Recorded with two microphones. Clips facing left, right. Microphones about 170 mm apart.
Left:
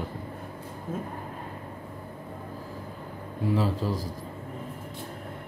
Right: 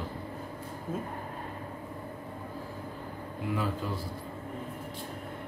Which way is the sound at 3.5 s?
30° left (ahead or behind).